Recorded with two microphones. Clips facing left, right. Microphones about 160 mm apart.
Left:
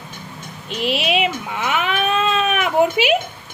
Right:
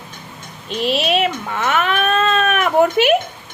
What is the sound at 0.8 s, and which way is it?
Speech, 10° left (ahead or behind).